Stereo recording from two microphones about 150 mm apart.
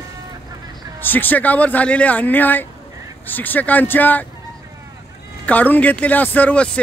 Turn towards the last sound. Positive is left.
turn(degrees=10)  # may be behind; listen again after turning